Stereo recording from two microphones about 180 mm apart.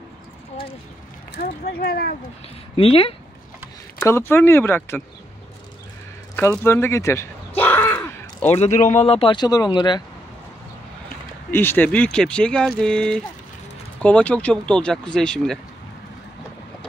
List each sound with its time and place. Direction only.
1.4 s speech: 55° left (ahead or behind)
2.7 s speech: 30° left (ahead or behind)
4.0 s speech: 15° left (ahead or behind)
6.6 s a sound: 15° left (ahead or behind)
8.5 s speech: 40° left (ahead or behind)
11.5 s speech: 10° left (ahead or behind)